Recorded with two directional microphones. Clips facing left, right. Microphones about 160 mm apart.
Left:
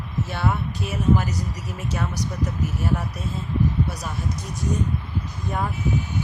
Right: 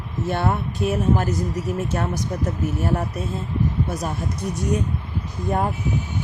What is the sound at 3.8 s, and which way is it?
Speech, 50° right (ahead or behind).